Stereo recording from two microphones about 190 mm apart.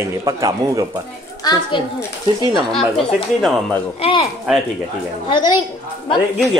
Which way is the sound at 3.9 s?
30° left (ahead or behind).